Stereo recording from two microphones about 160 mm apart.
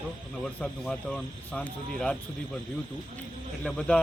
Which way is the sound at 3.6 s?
5° left (ahead or behind).